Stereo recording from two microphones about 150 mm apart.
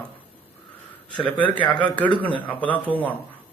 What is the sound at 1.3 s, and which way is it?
A man's voice, 10° left (ahead or behind).